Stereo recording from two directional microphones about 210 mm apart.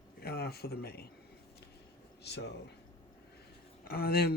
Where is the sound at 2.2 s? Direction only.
55° left (ahead or behind).